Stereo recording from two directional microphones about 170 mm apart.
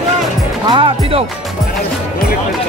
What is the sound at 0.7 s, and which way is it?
Music, 30° right (ahead or behind).